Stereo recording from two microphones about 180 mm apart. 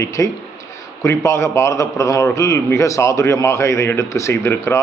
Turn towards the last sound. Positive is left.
turn(degrees=15)  # may be behind; listen again after turning